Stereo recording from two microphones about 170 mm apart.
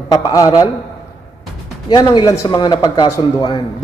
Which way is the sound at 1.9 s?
25° left (ahead or behind).